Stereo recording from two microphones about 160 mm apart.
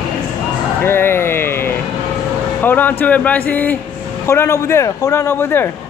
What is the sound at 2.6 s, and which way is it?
A man's voice, 10° left (ahead or behind).